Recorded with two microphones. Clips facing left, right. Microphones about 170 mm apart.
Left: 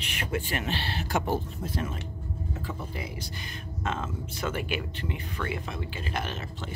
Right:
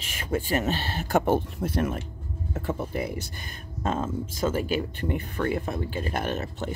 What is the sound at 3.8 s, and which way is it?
Speech, 35° right (ahead or behind).